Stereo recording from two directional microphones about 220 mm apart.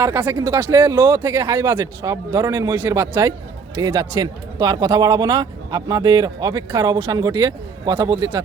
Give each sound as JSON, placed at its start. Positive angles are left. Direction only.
{"t": 0.0, "sound": "speech", "side_deg": -10}